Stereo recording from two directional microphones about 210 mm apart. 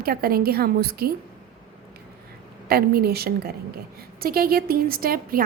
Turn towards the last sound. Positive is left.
turn(degrees=-45)  # may be behind; listen again after turning